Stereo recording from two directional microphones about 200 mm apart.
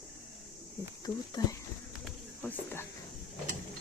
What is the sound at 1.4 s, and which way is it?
Speech, 20° left (ahead or behind).